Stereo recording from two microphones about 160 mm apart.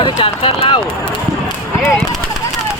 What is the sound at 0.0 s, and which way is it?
Speech, 35° left (ahead or behind).